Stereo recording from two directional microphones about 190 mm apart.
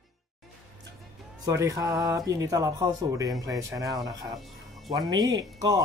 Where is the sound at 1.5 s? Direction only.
15° right (ahead or behind).